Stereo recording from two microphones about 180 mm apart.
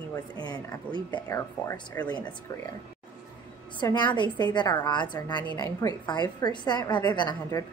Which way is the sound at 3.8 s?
25° left (ahead or behind).